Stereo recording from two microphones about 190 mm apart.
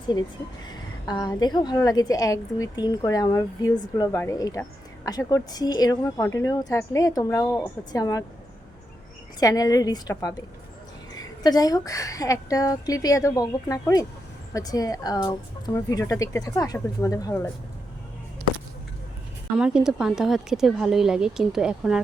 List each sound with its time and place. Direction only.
1.0 s a woman's voice: 20° left (ahead or behind)
9.4 s a woman's voice: 20° left (ahead or behind)
19.5 s a woman's voice: 5° right (ahead or behind)